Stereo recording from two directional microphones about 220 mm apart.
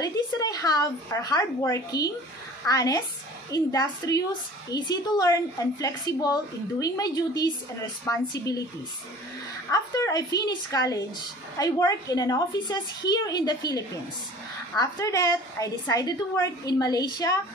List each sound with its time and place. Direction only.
0.0 s a woman's voice: 15° left (ahead or behind)
9.7 s a woman's voice: 15° left (ahead or behind)